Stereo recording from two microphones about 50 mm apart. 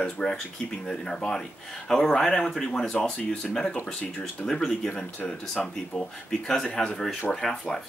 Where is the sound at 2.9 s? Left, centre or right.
Left; by 7.8 s centre.